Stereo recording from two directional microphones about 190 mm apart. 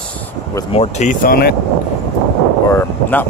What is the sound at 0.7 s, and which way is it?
Speech, 35° left (ahead or behind).